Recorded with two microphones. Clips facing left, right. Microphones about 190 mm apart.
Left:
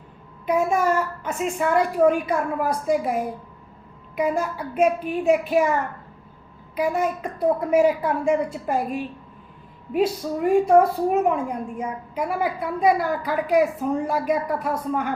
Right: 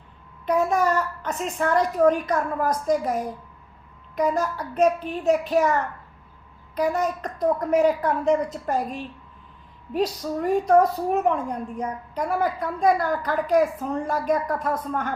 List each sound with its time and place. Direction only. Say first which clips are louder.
0.4 s a woman's voice: left 1 dB; 10° left (ahead or behind)
6.7 s a woman's voice: left 1 dB; 5° left (ahead or behind)
10.4 s a woman's voice: left 2 dB; 10° left (ahead or behind)